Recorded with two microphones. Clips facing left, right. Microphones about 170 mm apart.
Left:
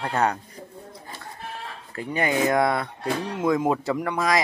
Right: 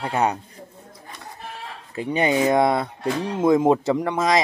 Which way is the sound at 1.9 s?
20° right (ahead or behind).